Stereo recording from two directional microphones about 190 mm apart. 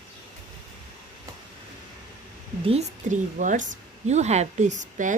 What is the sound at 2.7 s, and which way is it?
A woman's voice, 40° right (ahead or behind).